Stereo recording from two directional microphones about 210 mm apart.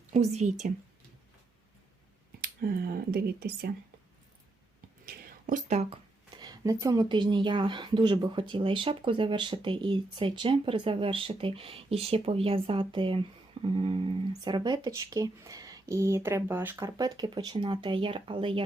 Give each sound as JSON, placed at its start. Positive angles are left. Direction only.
{"t": 0.1, "sound": "speech", "side_deg": -30}
{"t": 2.4, "sound": "speech", "side_deg": -45}
{"t": 5.0, "sound": "speech", "side_deg": -35}